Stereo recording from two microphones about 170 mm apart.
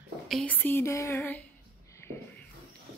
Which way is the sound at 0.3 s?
5° left (ahead or behind).